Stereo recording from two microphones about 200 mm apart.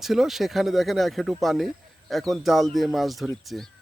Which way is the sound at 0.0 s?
Centre (ahead or behind).